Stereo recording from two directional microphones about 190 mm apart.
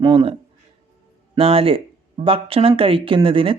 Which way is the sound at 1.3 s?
30° right (ahead or behind).